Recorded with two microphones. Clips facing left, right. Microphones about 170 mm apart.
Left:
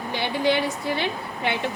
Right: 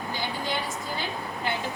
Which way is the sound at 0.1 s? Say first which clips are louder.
Left 9 dB; 70° left (ahead or behind).